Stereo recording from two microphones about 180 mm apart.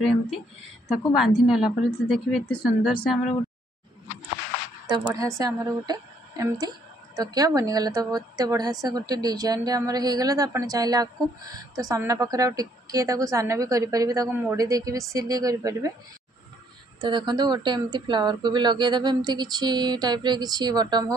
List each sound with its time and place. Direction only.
0.9 s speech: 5° right (ahead or behind)
4.8 s a woman's voice: 20° right (ahead or behind)
17.0 s a woman's voice: 25° right (ahead or behind)